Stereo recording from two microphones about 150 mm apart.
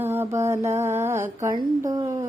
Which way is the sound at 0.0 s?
15° right (ahead or behind).